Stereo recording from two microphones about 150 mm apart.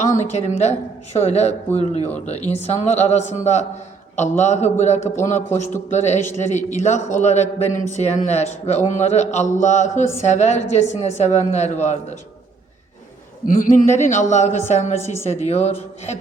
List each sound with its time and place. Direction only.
0.0 s speech: 50° left (ahead or behind)
13.4 s speech: 60° left (ahead or behind)